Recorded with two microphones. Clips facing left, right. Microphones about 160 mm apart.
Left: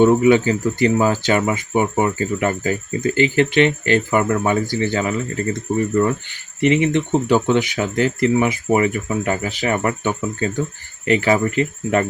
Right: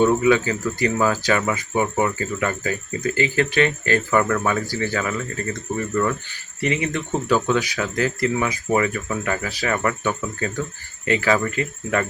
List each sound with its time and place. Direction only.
0.0 s speech: 25° left (ahead or behind)